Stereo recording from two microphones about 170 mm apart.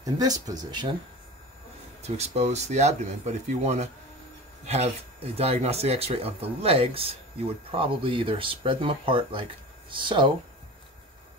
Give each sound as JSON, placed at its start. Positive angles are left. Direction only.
{"t": 0.0, "sound": "speech", "side_deg": -20}
{"t": 2.0, "sound": "speech", "side_deg": -40}